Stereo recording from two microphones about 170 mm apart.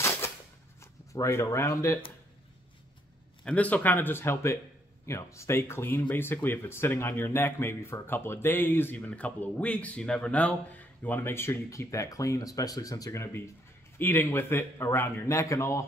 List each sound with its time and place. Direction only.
1.1 s speech: 15° left (ahead or behind)
3.4 s speech: 10° left (ahead or behind)